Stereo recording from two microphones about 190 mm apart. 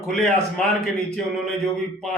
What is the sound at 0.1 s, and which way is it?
Speech, centre (ahead or behind).